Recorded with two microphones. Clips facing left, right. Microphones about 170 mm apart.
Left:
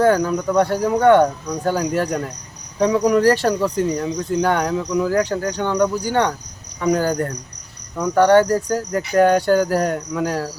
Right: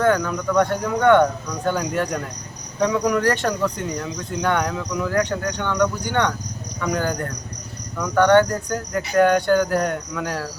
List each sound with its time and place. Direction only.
0.0 s speech: 35° left (ahead or behind)